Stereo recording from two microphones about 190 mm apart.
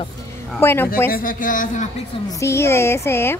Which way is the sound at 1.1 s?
45° left (ahead or behind).